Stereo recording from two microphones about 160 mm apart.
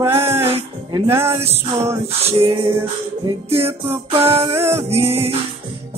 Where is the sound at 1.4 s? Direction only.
40° right (ahead or behind).